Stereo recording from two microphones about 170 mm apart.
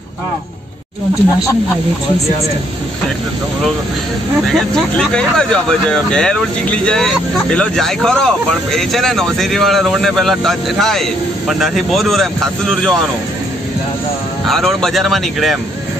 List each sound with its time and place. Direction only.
4.7 s speech: 5° left (ahead or behind)
14.5 s speech: centre (ahead or behind)